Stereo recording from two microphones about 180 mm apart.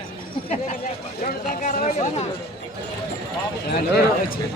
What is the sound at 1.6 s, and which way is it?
Speech, 45° left (ahead or behind).